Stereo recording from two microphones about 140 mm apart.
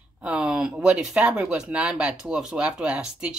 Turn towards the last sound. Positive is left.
turn(degrees=-5)  # may be behind; listen again after turning